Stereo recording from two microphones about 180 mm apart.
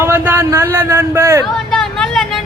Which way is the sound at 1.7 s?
5° left (ahead or behind).